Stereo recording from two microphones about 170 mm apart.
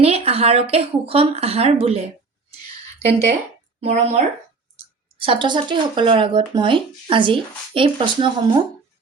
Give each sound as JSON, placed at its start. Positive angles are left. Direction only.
{"t": 0.0, "sound": "speech", "side_deg": -35}
{"t": 3.8, "sound": "speech", "side_deg": -45}
{"t": 5.1, "sound": "speech", "side_deg": -30}